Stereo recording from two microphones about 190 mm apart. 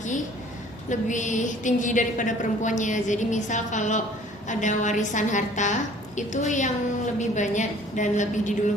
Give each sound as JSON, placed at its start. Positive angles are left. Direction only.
{"t": 0.9, "sound": "a woman's voice", "side_deg": 40}